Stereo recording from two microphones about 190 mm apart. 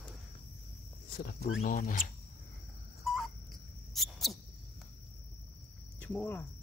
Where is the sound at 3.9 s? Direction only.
Centre (ahead or behind).